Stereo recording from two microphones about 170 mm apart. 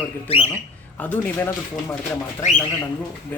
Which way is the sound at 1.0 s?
10° left (ahead or behind).